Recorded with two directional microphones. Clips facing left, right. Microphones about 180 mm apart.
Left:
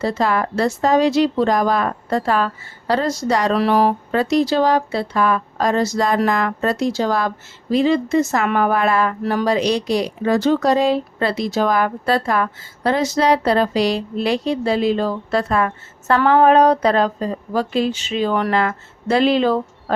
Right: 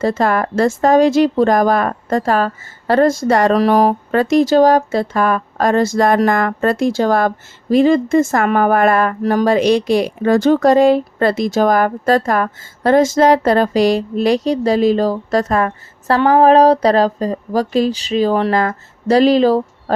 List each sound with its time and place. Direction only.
0.0 s a woman's voice: 50° right (ahead or behind)